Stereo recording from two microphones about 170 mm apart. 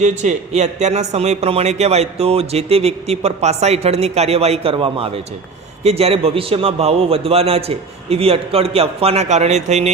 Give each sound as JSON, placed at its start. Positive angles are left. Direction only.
{"t": 0.0, "sound": "a man's voice", "side_deg": -45}